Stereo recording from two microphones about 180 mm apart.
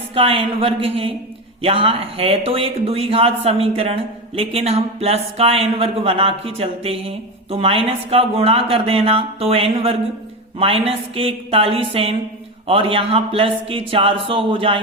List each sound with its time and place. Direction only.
0.1 s speech: 30° right (ahead or behind)